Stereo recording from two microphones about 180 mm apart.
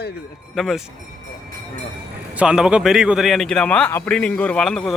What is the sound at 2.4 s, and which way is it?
A man's voice, 5° right (ahead or behind).